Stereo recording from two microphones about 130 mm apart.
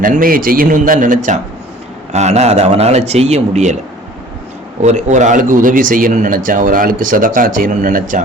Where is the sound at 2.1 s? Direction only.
60° right (ahead or behind).